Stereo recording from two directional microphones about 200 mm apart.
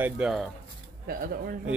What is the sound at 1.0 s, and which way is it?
Speech, 50° right (ahead or behind).